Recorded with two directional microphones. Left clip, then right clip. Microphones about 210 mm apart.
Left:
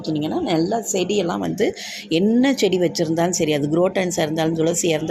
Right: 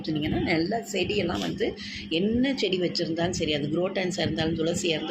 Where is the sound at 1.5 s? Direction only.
45° left (ahead or behind).